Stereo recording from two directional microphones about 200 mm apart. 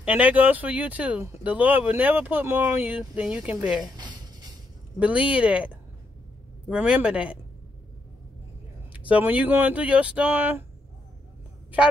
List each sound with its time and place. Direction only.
0.0 s speech: 5° right (ahead or behind)
3.9 s music: 20° right (ahead or behind)
4.9 s speech: 5° right (ahead or behind)
6.7 s speech: 5° right (ahead or behind)
8.9 s speech: 5° right (ahead or behind)